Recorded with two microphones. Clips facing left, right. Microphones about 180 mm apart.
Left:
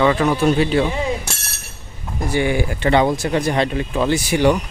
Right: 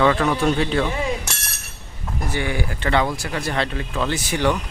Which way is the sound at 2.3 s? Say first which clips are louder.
Left 7 dB; 15° left (ahead or behind).